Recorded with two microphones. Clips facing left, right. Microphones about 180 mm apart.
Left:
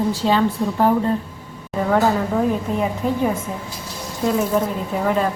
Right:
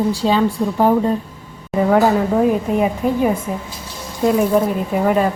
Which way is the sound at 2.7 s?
10° right (ahead or behind).